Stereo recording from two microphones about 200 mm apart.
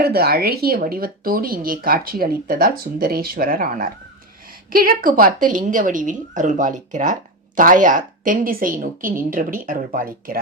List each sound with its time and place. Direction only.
0.0 s a woman's voice: 50° right (ahead or behind)